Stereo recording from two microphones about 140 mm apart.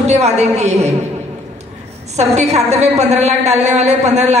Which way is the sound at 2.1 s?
50° right (ahead or behind).